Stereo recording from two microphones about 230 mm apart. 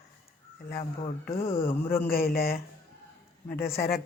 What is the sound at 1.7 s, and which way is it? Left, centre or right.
Speech, centre.